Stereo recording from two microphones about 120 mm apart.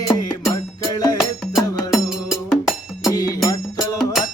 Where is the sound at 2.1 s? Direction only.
5° right (ahead or behind).